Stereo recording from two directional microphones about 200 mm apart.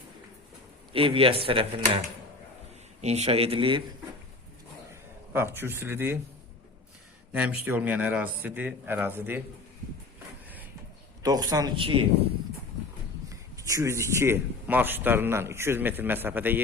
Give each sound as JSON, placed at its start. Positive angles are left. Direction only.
{"t": 0.9, "sound": "a man's voice", "side_deg": -25}
{"t": 3.0, "sound": "a man's voice", "side_deg": -30}
{"t": 5.3, "sound": "a man's voice", "side_deg": -10}
{"t": 7.3, "sound": "a man's voice", "side_deg": -5}
{"t": 11.2, "sound": "a man's voice", "side_deg": -20}
{"t": 13.6, "sound": "a man's voice", "side_deg": -15}